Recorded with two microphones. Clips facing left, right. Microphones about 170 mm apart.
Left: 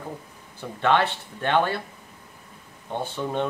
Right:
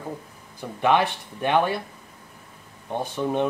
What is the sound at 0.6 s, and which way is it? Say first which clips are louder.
Speech: right 1 dB; 15° right (ahead or behind).